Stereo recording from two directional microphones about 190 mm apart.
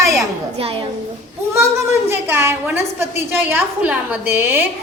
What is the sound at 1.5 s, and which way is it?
A woman's voice, 15° right (ahead or behind).